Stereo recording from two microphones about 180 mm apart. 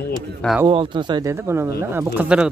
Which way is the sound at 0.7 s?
25° right (ahead or behind).